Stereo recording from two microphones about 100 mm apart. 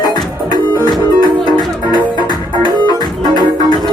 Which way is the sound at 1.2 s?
45° left (ahead or behind).